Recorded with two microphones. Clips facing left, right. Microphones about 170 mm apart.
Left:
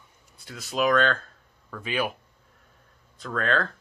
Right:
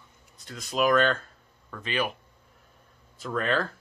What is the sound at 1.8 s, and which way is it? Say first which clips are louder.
Speech: left 1 dB; 10° left (ahead or behind).